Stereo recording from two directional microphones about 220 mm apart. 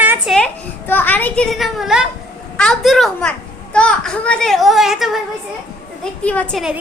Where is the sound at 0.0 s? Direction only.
10° right (ahead or behind).